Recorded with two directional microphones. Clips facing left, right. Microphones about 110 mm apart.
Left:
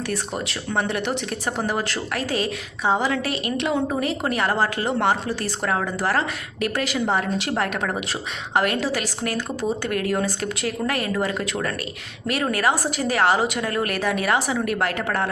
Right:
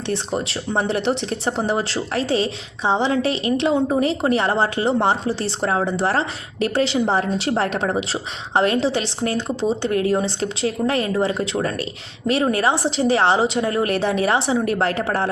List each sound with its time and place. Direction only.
0.1 s a woman's voice: 30° right (ahead or behind)